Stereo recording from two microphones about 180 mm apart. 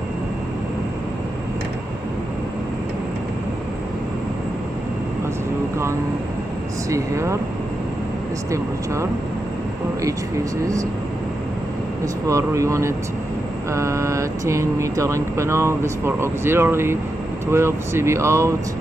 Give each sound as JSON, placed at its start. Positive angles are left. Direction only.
{"t": 6.9, "sound": "speech", "side_deg": -15}
{"t": 8.5, "sound": "speech", "side_deg": -15}
{"t": 12.3, "sound": "speech", "side_deg": -15}